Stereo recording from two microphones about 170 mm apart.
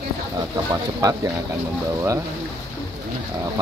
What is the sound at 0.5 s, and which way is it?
Speech, 20° right (ahead or behind).